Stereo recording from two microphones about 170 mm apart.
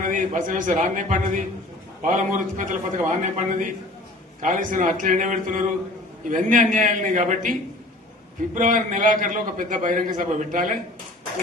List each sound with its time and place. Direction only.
0.0 s a man's voice: 50° right (ahead or behind)
8.5 s a man's voice: 50° right (ahead or behind)